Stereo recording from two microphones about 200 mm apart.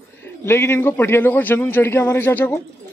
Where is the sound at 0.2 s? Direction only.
10° left (ahead or behind).